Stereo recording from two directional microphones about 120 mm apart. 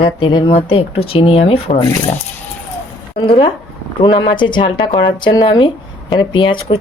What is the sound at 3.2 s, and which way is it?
Speech, 45° left (ahead or behind).